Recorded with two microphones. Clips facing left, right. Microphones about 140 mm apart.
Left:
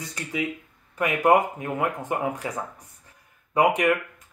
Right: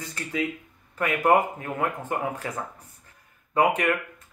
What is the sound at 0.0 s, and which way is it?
Speech, 15° left (ahead or behind).